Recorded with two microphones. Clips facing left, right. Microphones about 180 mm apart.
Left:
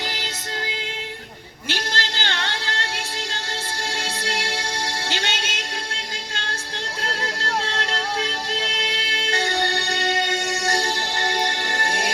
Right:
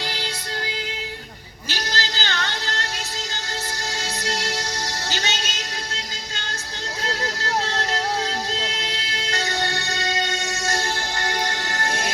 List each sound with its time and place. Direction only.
1.6 s a sound: 25° left (ahead or behind)
3.9 s music: 30° left (ahead or behind)
9.1 s music: 30° left (ahead or behind)